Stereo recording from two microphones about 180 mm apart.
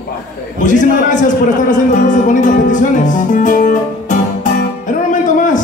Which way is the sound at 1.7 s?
45° left (ahead or behind).